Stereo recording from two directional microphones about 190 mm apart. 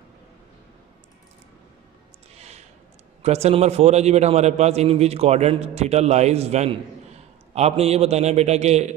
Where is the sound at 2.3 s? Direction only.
35° right (ahead or behind).